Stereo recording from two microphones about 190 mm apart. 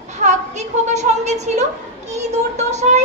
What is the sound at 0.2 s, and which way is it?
A woman's voice, 35° right (ahead or behind).